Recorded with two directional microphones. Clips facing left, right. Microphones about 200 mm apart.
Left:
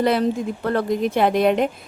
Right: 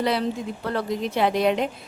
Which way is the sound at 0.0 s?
50° left (ahead or behind).